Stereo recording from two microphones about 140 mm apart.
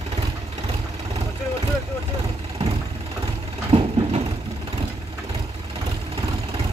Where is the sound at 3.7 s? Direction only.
40° right (ahead or behind).